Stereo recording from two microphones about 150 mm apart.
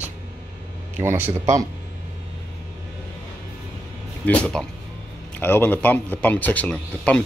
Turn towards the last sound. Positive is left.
turn(degrees=10)  # may be behind; listen again after turning